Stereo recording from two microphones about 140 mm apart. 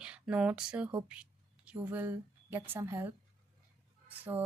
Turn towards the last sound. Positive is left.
turn(degrees=-15)  # may be behind; listen again after turning